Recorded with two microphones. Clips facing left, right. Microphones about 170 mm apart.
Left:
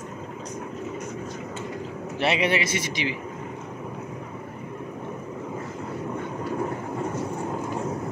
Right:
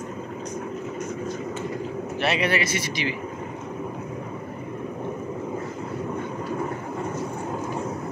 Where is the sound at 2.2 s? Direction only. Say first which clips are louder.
Left 1 dB; 20° left (ahead or behind).